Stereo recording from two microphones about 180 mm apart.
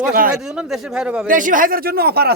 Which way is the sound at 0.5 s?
5° right (ahead or behind).